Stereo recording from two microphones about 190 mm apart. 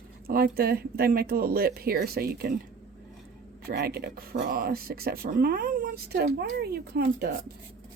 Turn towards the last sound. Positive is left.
turn(degrees=-60)  # may be behind; listen again after turning